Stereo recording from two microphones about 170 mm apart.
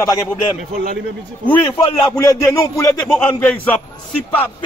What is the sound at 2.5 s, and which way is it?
A man's voice, 15° left (ahead or behind).